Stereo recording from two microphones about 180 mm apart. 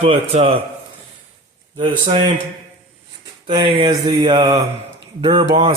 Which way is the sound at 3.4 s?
30° right (ahead or behind).